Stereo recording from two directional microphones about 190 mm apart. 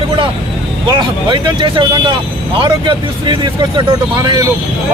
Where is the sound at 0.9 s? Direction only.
25° right (ahead or behind).